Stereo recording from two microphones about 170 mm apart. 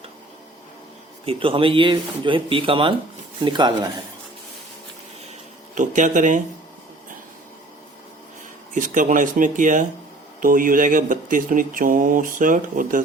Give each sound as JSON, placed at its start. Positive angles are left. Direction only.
{"t": 1.2, "sound": "speech", "side_deg": -35}
{"t": 5.7, "sound": "speech", "side_deg": -50}
{"t": 8.7, "sound": "speech", "side_deg": -50}